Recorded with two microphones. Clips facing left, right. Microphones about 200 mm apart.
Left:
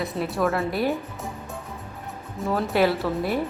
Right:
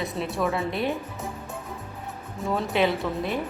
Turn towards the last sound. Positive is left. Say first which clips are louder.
# left 3 dB
turn(degrees=5)  # may be behind; listen again after turning